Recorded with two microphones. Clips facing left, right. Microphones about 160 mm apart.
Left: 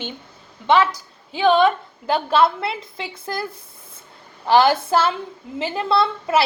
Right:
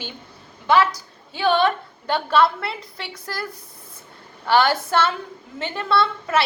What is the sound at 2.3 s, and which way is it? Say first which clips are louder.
Speech: even; 25° left (ahead or behind).